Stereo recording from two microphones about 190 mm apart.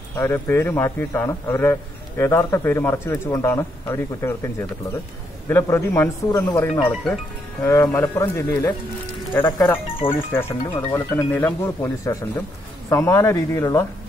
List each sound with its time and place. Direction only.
0.1 s a man's voice: 10° left (ahead or behind)